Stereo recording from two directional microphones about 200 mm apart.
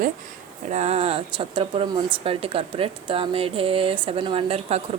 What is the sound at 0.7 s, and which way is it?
Speech, 35° right (ahead or behind).